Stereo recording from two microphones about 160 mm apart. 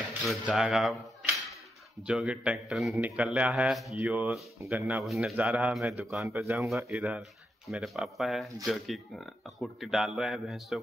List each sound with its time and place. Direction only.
0.2 s speech: centre (ahead or behind)
2.0 s speech: 5° right (ahead or behind)
6.2 s speech: 15° right (ahead or behind)
6.9 s speech: 5° right (ahead or behind)